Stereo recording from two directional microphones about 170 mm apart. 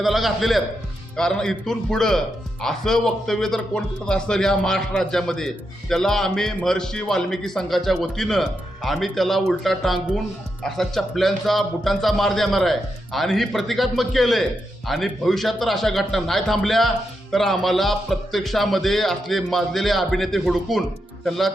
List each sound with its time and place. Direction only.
0.0 s speech: centre (ahead or behind)